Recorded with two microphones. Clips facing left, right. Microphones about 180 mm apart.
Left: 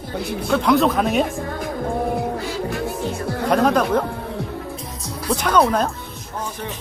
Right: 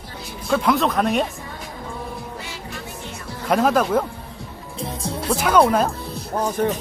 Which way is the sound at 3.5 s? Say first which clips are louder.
Even; 5° right (ahead or behind).